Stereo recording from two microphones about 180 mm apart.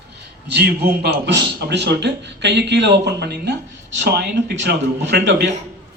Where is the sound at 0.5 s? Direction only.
70° right (ahead or behind).